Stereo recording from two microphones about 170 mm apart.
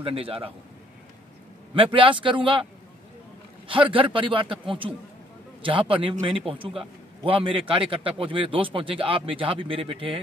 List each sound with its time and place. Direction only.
0.0 s a man's voice: 35° right (ahead or behind)
1.8 s a man's voice: 30° right (ahead or behind)
3.6 s a man's voice: 30° right (ahead or behind)